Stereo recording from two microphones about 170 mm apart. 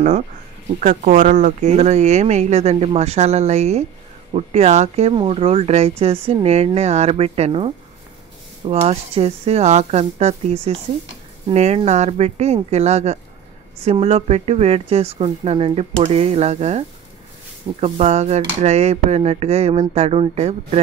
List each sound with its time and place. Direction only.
0.7 s speech: 50° right (ahead or behind)